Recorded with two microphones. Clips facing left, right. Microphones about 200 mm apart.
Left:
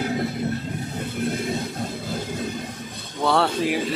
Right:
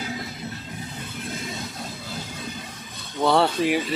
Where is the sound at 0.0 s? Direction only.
55° left (ahead or behind).